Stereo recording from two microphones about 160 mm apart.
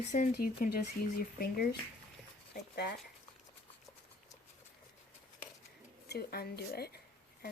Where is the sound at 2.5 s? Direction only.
90° left.